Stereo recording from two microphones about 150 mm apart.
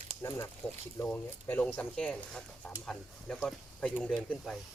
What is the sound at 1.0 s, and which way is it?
Speech, 10° left (ahead or behind).